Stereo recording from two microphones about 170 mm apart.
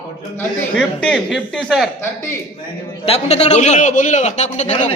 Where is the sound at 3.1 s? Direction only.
35° left (ahead or behind).